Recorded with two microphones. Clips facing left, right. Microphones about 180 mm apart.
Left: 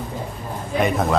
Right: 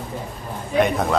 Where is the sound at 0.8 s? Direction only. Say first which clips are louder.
Right 2 dB; centre (ahead or behind).